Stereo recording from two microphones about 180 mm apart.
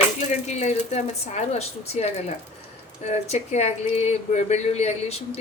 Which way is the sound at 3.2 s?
35° left (ahead or behind).